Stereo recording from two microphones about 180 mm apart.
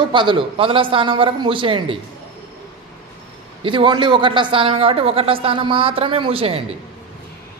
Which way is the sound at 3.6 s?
25° right (ahead or behind).